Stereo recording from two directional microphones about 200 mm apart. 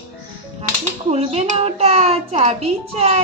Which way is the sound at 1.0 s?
35° right (ahead or behind).